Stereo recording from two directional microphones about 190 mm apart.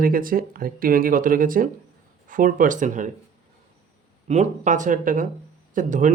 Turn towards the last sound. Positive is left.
turn(degrees=-40)  # may be behind; listen again after turning